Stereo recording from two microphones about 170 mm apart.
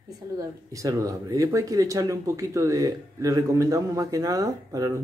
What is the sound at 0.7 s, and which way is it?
Speech, 20° right (ahead or behind).